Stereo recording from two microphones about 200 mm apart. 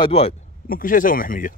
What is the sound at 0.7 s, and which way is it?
Speech, 45° left (ahead or behind).